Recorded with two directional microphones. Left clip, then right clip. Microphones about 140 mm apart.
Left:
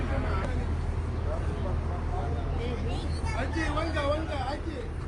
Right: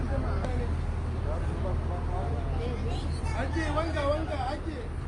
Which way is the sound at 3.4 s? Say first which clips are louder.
Right 1 dB; 5° left (ahead or behind).